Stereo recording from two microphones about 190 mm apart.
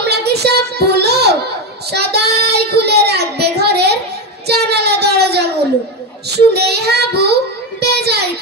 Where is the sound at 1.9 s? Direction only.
60° right (ahead or behind).